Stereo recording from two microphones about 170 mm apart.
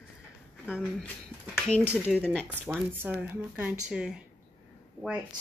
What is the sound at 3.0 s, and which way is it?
Speech, 10° right (ahead or behind).